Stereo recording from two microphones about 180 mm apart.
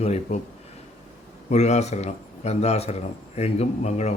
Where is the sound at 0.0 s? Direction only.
35° left (ahead or behind).